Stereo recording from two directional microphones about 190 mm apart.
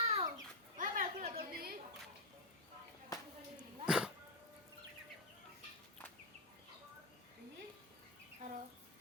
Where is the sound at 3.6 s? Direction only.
5° right (ahead or behind).